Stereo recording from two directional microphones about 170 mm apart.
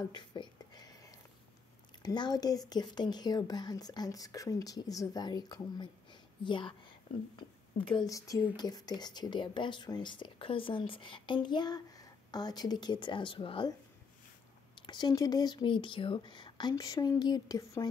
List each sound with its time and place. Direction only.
0.0 s a sound: 25° left (ahead or behind)
2.0 s speech: 25° left (ahead or behind)
14.8 s speech: 25° left (ahead or behind)